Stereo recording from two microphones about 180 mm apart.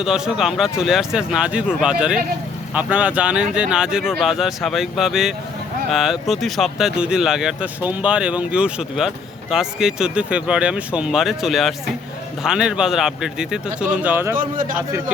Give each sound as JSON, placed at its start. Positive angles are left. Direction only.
{"t": 0.0, "sound": "speech", "side_deg": -5}
{"t": 14.3, "sound": "a man's voice", "side_deg": -50}